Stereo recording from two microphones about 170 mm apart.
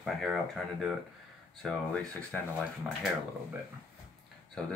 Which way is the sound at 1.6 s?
Centre (ahead or behind).